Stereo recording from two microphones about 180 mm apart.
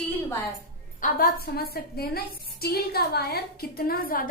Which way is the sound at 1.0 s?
55° left (ahead or behind).